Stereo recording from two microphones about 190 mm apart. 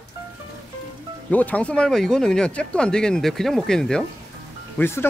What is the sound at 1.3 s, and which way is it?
Speech, 5° left (ahead or behind).